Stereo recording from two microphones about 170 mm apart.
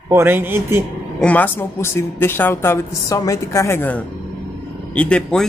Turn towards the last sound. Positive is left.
turn(degrees=5)  # may be behind; listen again after turning